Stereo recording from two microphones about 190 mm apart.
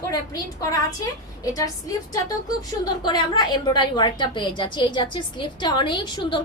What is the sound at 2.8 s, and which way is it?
A woman's voice, 20° left (ahead or behind).